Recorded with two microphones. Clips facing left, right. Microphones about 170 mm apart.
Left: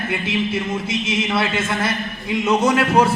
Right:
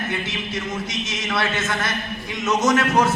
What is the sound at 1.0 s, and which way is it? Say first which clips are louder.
A man's voice: left 4 dB; 25° left (ahead or behind).